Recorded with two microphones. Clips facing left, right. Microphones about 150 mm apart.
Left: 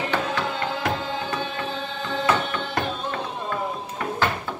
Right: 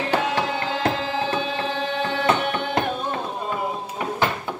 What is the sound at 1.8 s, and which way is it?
Music, 70° right (ahead or behind).